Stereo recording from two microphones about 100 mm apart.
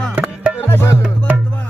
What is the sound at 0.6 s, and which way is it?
Music, 25° left (ahead or behind).